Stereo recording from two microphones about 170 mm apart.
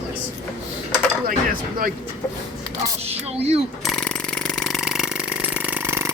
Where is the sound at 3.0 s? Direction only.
40° right (ahead or behind).